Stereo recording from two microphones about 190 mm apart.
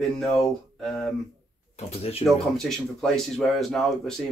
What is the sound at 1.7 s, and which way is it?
Speech, 30° left (ahead or behind).